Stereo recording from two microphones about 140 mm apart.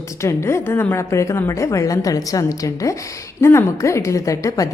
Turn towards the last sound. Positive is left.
turn(degrees=25)  # may be behind; listen again after turning